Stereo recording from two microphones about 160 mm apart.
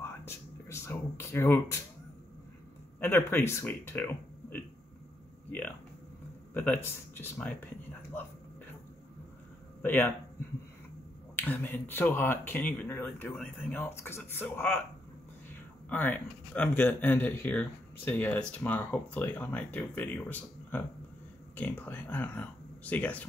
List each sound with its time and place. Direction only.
0.0 s speech: 15° left (ahead or behind)
3.0 s speech: 15° left (ahead or behind)
9.8 s speech: 10° left (ahead or behind)
11.3 s speech: 10° left (ahead or behind)
15.9 s speech: 10° left (ahead or behind)